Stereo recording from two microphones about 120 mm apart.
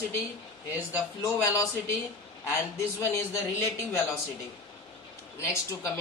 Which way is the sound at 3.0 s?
25° left (ahead or behind).